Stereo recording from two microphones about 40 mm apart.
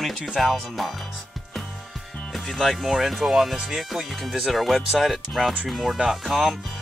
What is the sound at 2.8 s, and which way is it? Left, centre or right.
Speech, centre.